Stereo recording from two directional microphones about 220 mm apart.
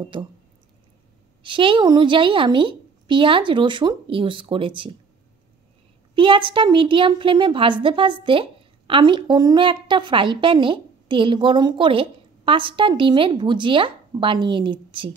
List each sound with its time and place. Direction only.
1.4 s a woman's voice: 20° right (ahead or behind)
6.1 s a woman's voice: 25° right (ahead or behind)